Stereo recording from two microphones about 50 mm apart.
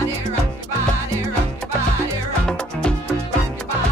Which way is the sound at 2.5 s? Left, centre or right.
Centre.